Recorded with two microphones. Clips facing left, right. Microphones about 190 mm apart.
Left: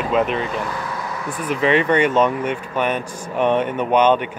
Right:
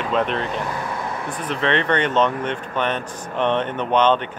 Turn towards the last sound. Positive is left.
turn(degrees=10)  # may be behind; listen again after turning